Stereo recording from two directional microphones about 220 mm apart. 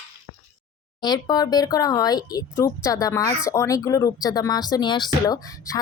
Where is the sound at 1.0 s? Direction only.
20° left (ahead or behind).